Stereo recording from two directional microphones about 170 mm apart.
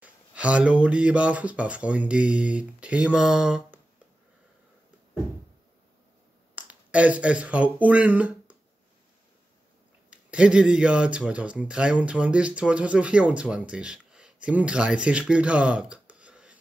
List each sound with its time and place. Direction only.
0.0 s speech: 10° right (ahead or behind)
6.5 s speech: 10° right (ahead or behind)
10.0 s speech: 5° right (ahead or behind)